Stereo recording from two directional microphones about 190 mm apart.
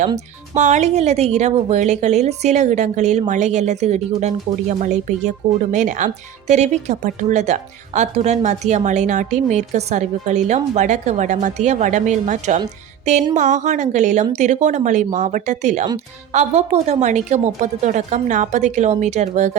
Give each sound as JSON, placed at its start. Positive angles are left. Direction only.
{"t": 0.5, "sound": "a woman's voice", "side_deg": -35}